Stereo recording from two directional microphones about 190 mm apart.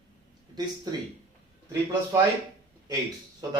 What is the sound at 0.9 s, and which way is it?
Speech, 20° right (ahead or behind).